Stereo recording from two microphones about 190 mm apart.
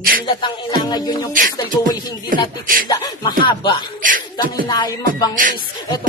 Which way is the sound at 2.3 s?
45° right (ahead or behind).